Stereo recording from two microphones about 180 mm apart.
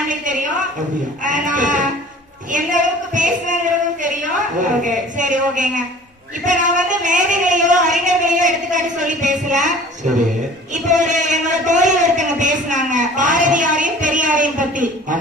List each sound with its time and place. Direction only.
1.2 s a woman's voice: 45° right (ahead or behind)
2.5 s a sound: 45° right (ahead or behind)
4.8 s a woman's voice: 45° right (ahead or behind)
10.8 s a man's voice: 45° right (ahead or behind)